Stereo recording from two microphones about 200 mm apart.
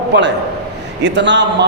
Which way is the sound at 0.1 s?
60° right (ahead or behind).